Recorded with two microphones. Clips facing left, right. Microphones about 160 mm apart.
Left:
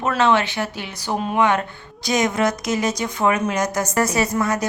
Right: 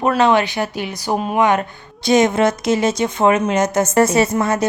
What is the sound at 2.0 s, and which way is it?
A woman's voice, 25° right (ahead or behind).